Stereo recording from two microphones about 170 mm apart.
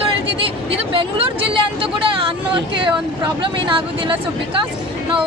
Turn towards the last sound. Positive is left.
turn(degrees=-30)  # may be behind; listen again after turning